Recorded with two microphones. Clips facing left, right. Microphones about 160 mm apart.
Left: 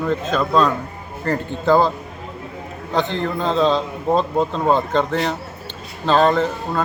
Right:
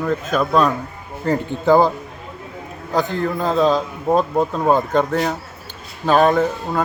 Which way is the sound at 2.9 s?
5° right (ahead or behind).